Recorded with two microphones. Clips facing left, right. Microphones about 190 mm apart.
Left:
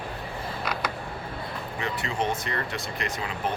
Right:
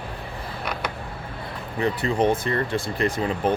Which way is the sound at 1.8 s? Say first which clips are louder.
Right 8 dB; 35° right (ahead or behind).